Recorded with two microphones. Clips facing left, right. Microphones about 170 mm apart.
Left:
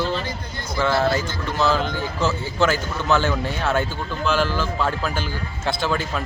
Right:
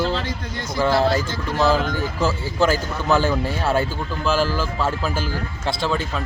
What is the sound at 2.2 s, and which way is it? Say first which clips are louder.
Speech: even; 10° right (ahead or behind).